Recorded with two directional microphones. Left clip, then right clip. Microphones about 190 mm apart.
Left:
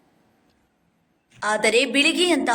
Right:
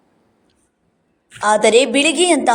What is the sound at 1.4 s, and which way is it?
A woman's voice, 25° right (ahead or behind).